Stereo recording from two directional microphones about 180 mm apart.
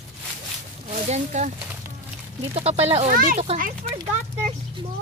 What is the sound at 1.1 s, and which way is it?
Speech, 40° right (ahead or behind).